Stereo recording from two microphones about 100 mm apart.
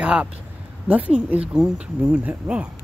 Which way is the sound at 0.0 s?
10° right (ahead or behind).